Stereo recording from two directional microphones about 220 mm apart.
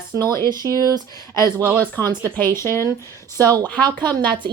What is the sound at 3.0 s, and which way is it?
Speech, 15° left (ahead or behind).